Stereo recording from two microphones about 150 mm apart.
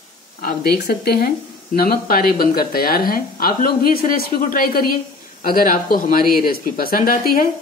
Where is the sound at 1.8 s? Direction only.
80° left.